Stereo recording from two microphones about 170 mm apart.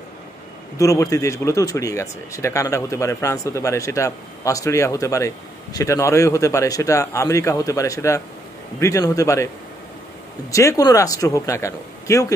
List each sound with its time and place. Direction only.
0.7 s speech: 20° left (ahead or behind)
10.5 s speech: 20° left (ahead or behind)